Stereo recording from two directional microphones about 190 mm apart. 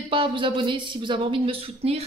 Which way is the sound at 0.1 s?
25° right (ahead or behind).